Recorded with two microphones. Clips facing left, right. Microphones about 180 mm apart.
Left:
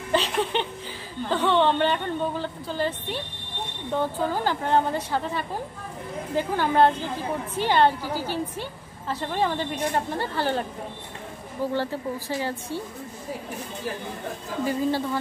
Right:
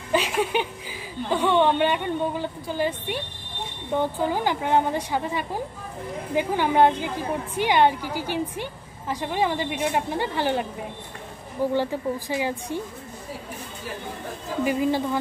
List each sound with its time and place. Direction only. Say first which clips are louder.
0.1 s a sound: right 1 dB; 10° right (ahead or behind)
1.3 s a woman's voice: right 1 dB; 10° right (ahead or behind)
11.7 s a woman's voice: right 2 dB; 15° right (ahead or behind)
14.6 s a woman's voice: right 2 dB; 15° right (ahead or behind)